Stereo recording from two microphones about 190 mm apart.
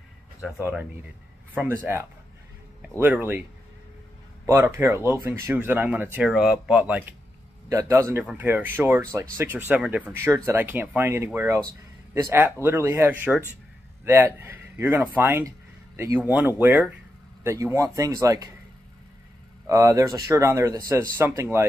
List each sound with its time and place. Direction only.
0.4 s speech: 10° right (ahead or behind)
4.5 s speech: 10° right (ahead or behind)
19.6 s speech: 15° right (ahead or behind)